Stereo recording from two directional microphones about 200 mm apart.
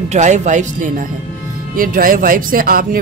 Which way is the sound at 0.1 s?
35° right (ahead or behind).